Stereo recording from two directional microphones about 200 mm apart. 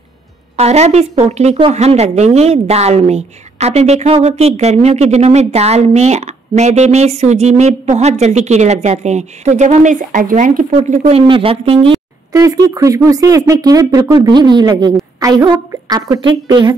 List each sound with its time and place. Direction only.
0.6 s speech: 35° right (ahead or behind)
12.3 s speech: 15° right (ahead or behind)